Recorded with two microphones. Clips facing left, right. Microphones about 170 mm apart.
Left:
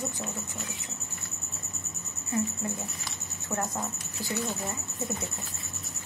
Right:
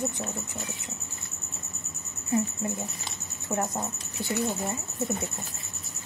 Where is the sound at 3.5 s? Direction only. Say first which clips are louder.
Right 3 dB; 20° right (ahead or behind).